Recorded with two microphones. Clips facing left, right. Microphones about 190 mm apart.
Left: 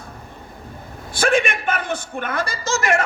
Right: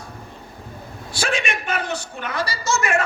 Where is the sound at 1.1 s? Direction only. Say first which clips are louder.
Left 6 dB; 55° left (ahead or behind).